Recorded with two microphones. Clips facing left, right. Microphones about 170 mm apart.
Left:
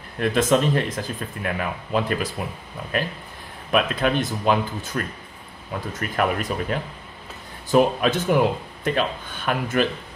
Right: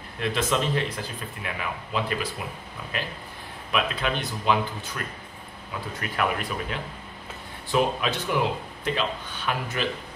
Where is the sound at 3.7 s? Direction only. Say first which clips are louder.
Left 6 dB; 50° left (ahead or behind).